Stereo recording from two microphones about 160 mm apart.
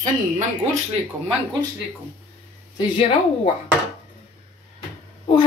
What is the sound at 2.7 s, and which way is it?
Speech, 35° left (ahead or behind).